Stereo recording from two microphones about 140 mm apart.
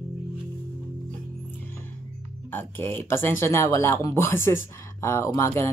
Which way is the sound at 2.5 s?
15° left (ahead or behind).